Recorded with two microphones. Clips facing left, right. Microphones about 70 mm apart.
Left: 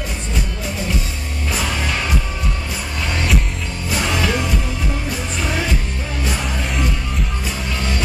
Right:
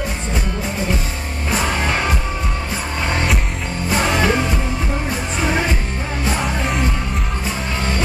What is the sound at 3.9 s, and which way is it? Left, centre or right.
Music, right.